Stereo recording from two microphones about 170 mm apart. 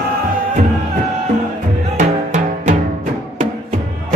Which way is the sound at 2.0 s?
45° right (ahead or behind).